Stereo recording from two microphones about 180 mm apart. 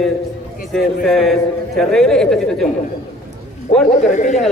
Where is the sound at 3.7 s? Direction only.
45° left (ahead or behind).